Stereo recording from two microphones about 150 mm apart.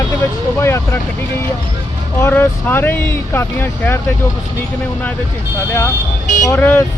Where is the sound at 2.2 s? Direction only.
15° left (ahead or behind).